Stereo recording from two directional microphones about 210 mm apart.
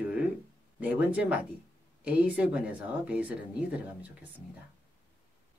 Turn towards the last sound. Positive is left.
turn(degrees=-5)  # may be behind; listen again after turning